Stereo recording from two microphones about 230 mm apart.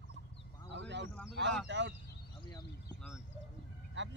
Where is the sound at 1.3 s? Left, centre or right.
Right.